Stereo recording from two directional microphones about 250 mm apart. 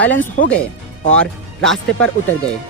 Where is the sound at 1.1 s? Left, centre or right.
Centre.